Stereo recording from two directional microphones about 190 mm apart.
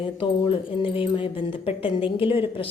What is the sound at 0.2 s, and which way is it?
Speech, 30° left (ahead or behind).